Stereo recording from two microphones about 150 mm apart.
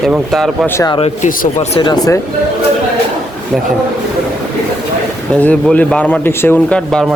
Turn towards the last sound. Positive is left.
turn(degrees=5)  # may be behind; listen again after turning